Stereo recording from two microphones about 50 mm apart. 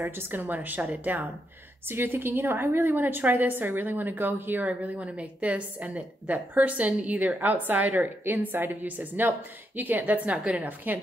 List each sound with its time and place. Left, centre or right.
0.0 s a woman's voice: right
1.9 s a woman's voice: right
4.6 s a woman's voice: right